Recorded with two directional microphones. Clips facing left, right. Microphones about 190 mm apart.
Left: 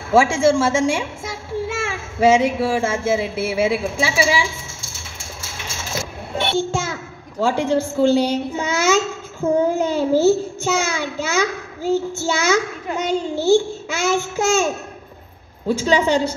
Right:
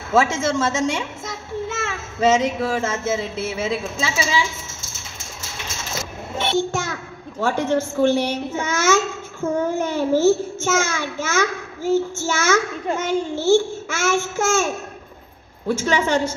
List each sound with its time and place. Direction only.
0.1 s a child's voice: 10° left (ahead or behind)
6.9 s a sound: 10° left (ahead or behind)
7.8 s a child's voice: 15° left (ahead or behind)